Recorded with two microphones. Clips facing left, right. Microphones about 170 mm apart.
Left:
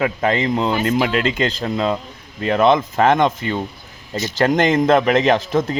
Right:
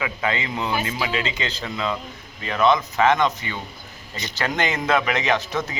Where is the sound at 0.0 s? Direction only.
45° left (ahead or behind).